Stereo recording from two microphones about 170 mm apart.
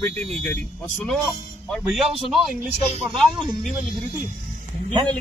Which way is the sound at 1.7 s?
Centre (ahead or behind).